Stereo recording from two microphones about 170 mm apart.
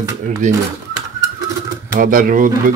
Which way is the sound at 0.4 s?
45° right (ahead or behind).